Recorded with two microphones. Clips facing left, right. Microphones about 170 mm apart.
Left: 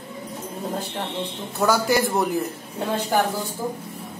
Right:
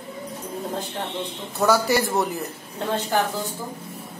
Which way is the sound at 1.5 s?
Centre (ahead or behind).